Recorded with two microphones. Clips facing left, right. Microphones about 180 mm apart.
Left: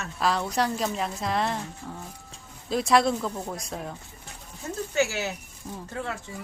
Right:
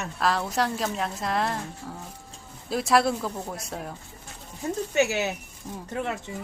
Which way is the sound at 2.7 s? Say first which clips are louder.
Even; 5° right (ahead or behind).